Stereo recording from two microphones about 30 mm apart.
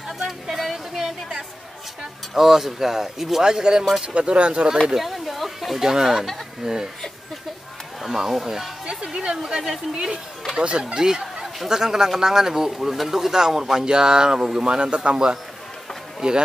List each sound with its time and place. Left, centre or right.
0.2 s a sound: centre
0.9 s a sound: centre
2.3 s speech: centre
3.4 s speech: right
4.0 s speech: right
4.9 s a sound: centre
5.8 s speech: centre
8.0 s speech: centre
8.8 s speech: right; by 13.1 s centre
13.1 s speech: centre
15.0 s speech: right
16.2 s speech: right